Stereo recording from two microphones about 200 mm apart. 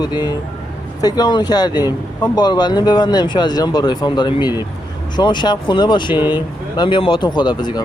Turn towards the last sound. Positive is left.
turn(degrees=20)  # may be behind; listen again after turning